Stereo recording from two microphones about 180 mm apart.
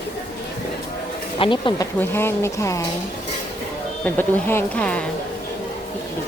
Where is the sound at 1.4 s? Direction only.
25° left (ahead or behind).